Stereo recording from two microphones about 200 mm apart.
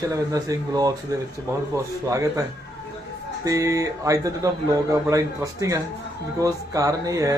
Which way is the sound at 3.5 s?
15° right (ahead or behind).